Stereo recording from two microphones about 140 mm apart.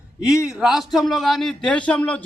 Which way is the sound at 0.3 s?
5° right (ahead or behind).